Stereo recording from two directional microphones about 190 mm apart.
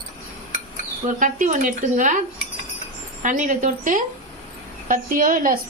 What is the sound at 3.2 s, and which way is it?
A woman's voice, 40° right (ahead or behind).